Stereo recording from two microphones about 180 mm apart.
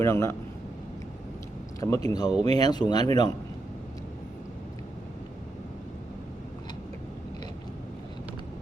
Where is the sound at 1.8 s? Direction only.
20° left (ahead or behind).